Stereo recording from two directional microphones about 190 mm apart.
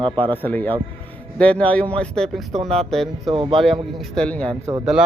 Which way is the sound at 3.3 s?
30° right (ahead or behind).